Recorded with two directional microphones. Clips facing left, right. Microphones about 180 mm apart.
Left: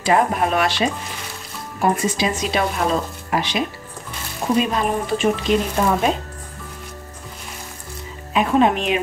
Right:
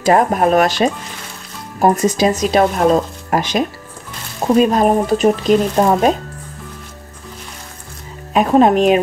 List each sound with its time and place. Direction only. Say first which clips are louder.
0.0 s speech: right 5 dB; 45° right (ahead or behind)
8.3 s speech: right 5 dB; 45° right (ahead or behind)